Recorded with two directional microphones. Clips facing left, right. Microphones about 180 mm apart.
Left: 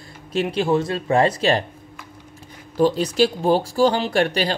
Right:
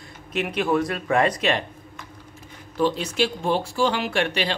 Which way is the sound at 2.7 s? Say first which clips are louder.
Left 5 dB; 40° left (ahead or behind).